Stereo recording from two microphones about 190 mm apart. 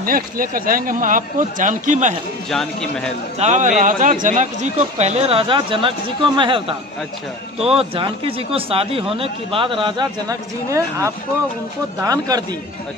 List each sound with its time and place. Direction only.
0.0 s speech: 50° right (ahead or behind)
2.5 s speech: 5° left (ahead or behind)
3.3 s speech: 40° right (ahead or behind)
7.6 s speech: 30° right (ahead or behind)